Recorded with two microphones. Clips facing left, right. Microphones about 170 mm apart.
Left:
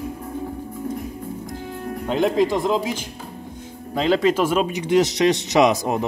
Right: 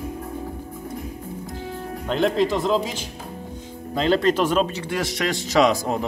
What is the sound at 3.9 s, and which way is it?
Speech, 10° left (ahead or behind).